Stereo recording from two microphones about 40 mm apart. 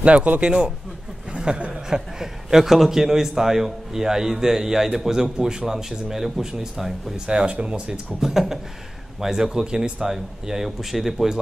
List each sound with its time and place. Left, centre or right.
0.0 s a man's voice: right; by 6.4 s centre
7.2 s speech: right
8.2 s a man's voice: centre